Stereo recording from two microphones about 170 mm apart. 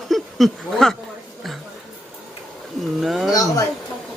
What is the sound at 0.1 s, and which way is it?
Speech, centre (ahead or behind).